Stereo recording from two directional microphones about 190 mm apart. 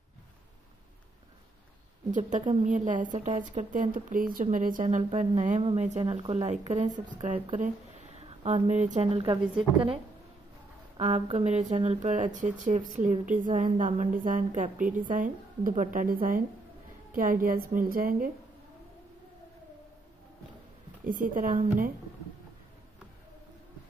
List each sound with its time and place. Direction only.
2.0 s a woman's voice: 40° right (ahead or behind)
8.5 s a woman's voice: 35° right (ahead or behind)
11.0 s a woman's voice: 35° right (ahead or behind)
21.0 s a woman's voice: 45° right (ahead or behind)